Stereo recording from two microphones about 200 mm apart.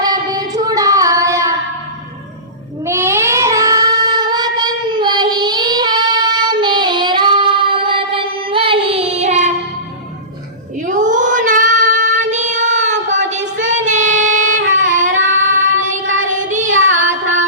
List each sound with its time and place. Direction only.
0.0 s singing: 20° right (ahead or behind)
2.8 s child singing: 15° right (ahead or behind); by 9.5 s 35° right (ahead or behind)
10.8 s child singing: 40° right (ahead or behind)
14.6 s a sound: 75° right (ahead or behind)
15.4 s child singing: 40° right (ahead or behind)
16.7 s music: 80° right